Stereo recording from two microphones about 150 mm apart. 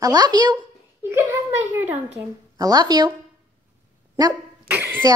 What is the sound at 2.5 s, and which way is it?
Speech, 25° right (ahead or behind).